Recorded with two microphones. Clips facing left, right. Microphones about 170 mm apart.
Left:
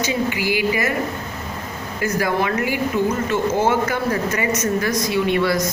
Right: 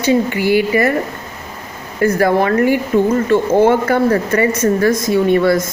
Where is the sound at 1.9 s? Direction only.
50° right (ahead or behind).